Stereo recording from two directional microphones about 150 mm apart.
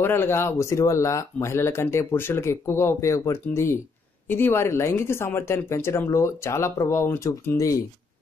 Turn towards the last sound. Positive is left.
turn(degrees=20)  # may be behind; listen again after turning